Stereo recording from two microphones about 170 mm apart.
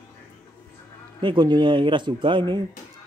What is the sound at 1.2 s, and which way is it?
Speech, 25° right (ahead or behind).